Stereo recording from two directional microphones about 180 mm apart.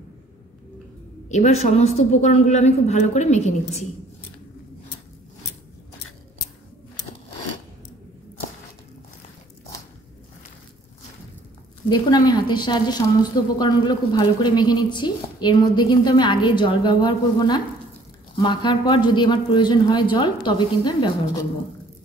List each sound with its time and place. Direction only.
1.3 s a woman's voice: 40° left (ahead or behind)
11.9 s a woman's voice: 25° left (ahead or behind)